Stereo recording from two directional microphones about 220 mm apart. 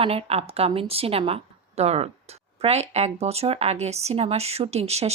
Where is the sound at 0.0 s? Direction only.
25° right (ahead or behind).